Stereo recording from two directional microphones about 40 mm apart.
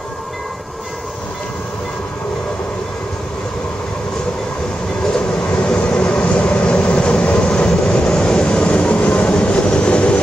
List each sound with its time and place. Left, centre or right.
5.5 s vehicle: left
8.2 s train: left